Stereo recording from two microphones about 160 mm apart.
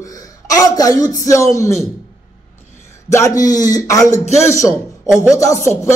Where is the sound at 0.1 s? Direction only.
20° left (ahead or behind).